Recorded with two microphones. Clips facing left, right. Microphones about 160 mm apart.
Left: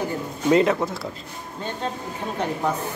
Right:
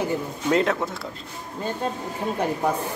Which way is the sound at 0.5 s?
Centre (ahead or behind).